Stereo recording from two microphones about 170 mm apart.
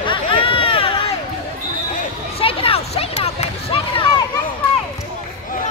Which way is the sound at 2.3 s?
35° left (ahead or behind).